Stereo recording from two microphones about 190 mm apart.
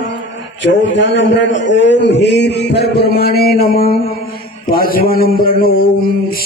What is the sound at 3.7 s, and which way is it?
Mantra, 55° left (ahead or behind).